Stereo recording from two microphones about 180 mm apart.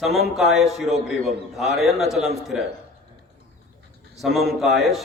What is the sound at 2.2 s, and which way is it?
Speech, 40° right (ahead or behind).